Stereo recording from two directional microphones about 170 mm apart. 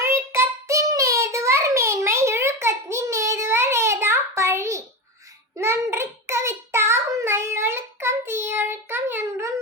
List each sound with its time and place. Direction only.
0.0 s child singing: 15° right (ahead or behind)